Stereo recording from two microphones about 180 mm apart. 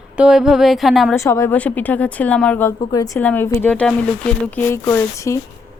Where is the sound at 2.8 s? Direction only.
20° left (ahead or behind).